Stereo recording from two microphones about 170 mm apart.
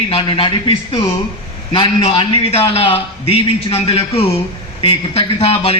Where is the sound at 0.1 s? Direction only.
30° left (ahead or behind).